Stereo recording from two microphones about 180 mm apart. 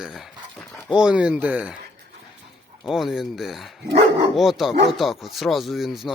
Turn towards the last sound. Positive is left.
turn(degrees=0)  # may be behind; listen again after turning